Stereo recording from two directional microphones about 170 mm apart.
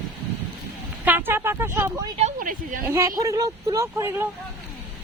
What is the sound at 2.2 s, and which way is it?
Speech, 50° right (ahead or behind).